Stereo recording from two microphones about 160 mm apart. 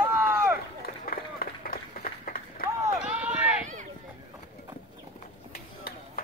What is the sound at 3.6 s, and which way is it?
Run, 50° right (ahead or behind).